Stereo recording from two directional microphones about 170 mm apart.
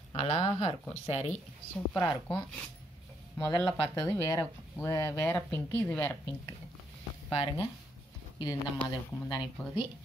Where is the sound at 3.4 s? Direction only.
25° left (ahead or behind).